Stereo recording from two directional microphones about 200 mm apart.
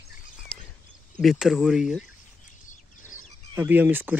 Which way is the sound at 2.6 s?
40° left (ahead or behind).